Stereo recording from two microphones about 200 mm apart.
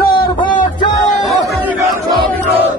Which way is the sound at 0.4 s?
25° left (ahead or behind).